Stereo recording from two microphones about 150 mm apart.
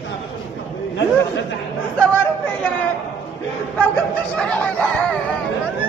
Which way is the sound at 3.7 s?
10° left (ahead or behind).